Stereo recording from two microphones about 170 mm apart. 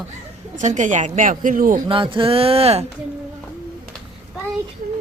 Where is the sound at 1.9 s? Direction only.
30° right (ahead or behind).